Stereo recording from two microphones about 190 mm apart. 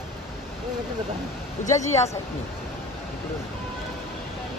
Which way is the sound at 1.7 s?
40° left (ahead or behind).